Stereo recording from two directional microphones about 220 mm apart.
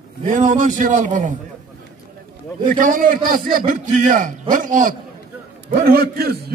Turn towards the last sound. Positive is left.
turn(degrees=-45)  # may be behind; listen again after turning